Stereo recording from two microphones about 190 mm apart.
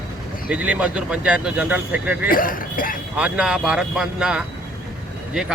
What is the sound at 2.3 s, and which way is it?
Speech, 45° left (ahead or behind).